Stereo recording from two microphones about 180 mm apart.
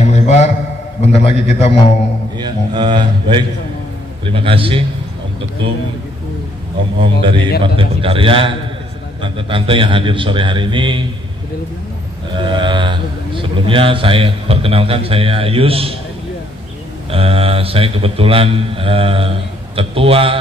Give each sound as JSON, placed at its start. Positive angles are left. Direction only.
{"t": 0.0, "sound": "a sound", "side_deg": 40}
{"t": 1.0, "sound": "a man's voice", "side_deg": 35}
{"t": 2.3, "sound": "a man's voice", "side_deg": -25}
{"t": 7.0, "sound": "a man's voice", "side_deg": -30}
{"t": 12.4, "sound": "a man's voice", "side_deg": -25}
{"t": 17.1, "sound": "a man's voice", "side_deg": -30}